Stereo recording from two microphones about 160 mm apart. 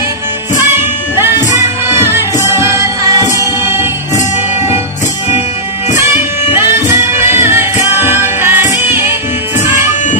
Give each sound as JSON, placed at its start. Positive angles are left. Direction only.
{"t": 0.6, "sound": "music", "side_deg": -15}
{"t": 5.9, "sound": "music", "side_deg": -15}